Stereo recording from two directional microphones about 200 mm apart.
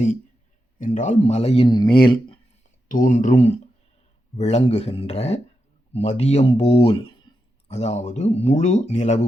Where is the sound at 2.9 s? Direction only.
40° left (ahead or behind).